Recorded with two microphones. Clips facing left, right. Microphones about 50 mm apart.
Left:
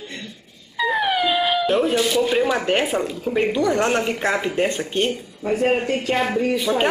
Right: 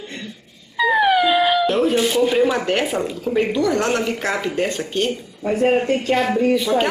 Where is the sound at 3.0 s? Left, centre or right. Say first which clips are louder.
Right 1 dB; centre.